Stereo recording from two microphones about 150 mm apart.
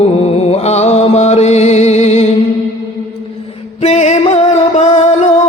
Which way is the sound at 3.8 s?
45° left (ahead or behind).